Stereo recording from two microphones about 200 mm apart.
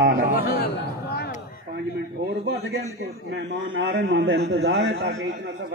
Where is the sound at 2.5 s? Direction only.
60° right (ahead or behind).